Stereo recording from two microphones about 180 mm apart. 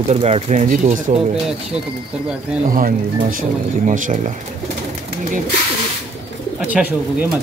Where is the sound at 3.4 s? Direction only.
45° right (ahead or behind).